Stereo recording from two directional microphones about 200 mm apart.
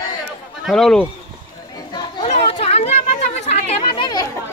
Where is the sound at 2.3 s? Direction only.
30° left (ahead or behind).